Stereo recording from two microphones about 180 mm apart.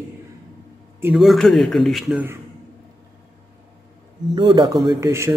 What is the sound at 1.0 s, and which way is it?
A man's voice, 5° right (ahead or behind).